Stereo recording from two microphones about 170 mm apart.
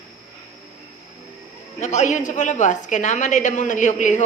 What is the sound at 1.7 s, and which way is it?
A woman's voice, 45° left (ahead or behind).